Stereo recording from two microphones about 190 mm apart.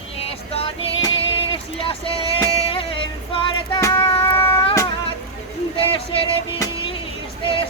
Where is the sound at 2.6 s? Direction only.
25° left (ahead or behind).